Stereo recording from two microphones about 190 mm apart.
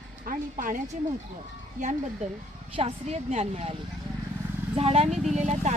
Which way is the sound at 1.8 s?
45° right (ahead or behind).